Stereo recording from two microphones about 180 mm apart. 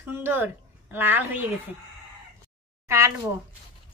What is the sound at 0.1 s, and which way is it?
A woman's voice, 10° right (ahead or behind).